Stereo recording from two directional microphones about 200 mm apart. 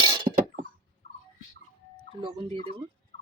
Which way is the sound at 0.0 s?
25° right (ahead or behind).